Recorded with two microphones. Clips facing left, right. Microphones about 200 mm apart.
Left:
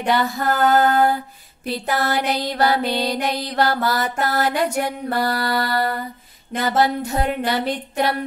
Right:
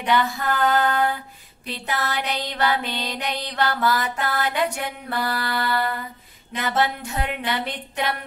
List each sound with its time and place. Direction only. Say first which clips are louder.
0.0 s music: left 2 dB; 40° left (ahead or behind)